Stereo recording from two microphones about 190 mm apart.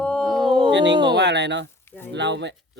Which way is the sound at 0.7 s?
65° right (ahead or behind).